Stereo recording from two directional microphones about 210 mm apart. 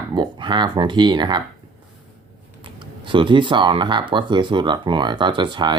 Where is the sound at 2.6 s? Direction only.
25° right (ahead or behind).